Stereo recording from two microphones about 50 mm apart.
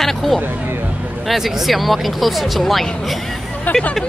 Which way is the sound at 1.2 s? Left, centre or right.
Centre.